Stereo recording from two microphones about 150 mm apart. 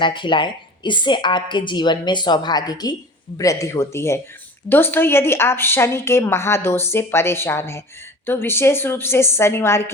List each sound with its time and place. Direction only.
0.0 s a woman's voice: 30° left (ahead or behind); by 9.9 s 15° left (ahead or behind)